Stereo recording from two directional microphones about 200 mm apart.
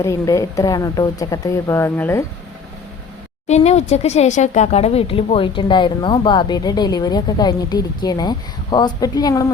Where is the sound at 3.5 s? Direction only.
35° left (ahead or behind).